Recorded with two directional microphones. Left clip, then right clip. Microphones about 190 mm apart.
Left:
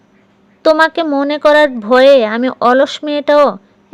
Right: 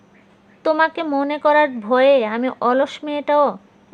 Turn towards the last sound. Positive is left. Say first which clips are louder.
# left 7 dB
turn(degrees=30)  # may be behind; listen again after turning